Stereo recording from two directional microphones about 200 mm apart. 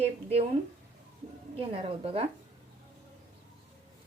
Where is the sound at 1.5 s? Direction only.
30° right (ahead or behind).